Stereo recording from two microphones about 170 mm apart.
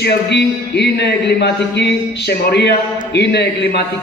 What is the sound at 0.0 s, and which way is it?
Speech, 80° left.